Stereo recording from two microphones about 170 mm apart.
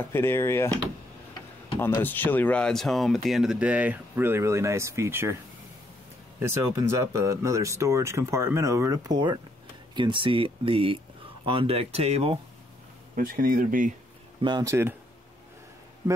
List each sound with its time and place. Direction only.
0.1 s speech: 15° left (ahead or behind)
1.8 s speech: 10° left (ahead or behind); by 5.4 s 15° right (ahead or behind)
6.4 s speech: 15° right (ahead or behind); by 12.4 s 35° right (ahead or behind)
13.1 s speech: 55° right (ahead or behind)
14.4 s speech: 20° right (ahead or behind)